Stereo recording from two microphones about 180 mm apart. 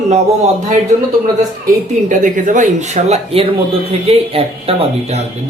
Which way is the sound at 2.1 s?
45° right (ahead or behind).